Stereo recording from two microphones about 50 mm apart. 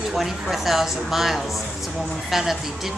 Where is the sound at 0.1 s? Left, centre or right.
Centre.